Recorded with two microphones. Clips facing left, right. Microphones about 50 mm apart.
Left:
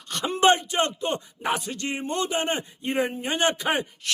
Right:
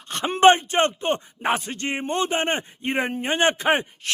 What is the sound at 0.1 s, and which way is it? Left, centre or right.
A man's voice, right.